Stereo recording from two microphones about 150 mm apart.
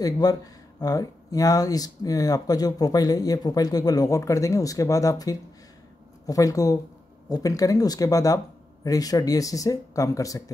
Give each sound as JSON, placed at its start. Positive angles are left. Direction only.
{"t": 0.0, "sound": "speech", "side_deg": 25}